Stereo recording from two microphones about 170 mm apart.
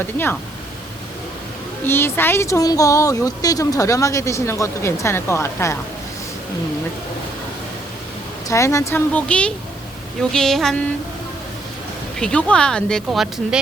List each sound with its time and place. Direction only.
0.0 s speech: 10° left (ahead or behind)
1.9 s speech: 15° left (ahead or behind)
8.4 s speech: 20° left (ahead or behind); by 10.8 s centre (ahead or behind)
12.2 s speech: 5° left (ahead or behind)